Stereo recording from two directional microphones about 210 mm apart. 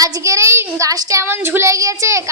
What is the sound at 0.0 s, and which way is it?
Child singing, 15° right (ahead or behind).